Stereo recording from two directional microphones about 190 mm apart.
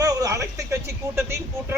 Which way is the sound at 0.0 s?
20° right (ahead or behind).